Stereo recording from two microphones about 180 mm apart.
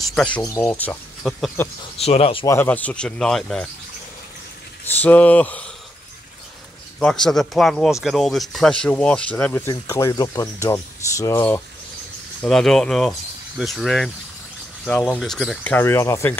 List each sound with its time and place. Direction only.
0.1 s speech: 5° left (ahead or behind)
0.4 s speech: 15° left (ahead or behind)
2.0 s speech: 35° left (ahead or behind)
2.4 s speech: 10° left (ahead or behind)
5.0 s speech: 10° left (ahead or behind)
7.0 s speech: 5° left (ahead or behind)
12.4 s speech: 5° left (ahead or behind)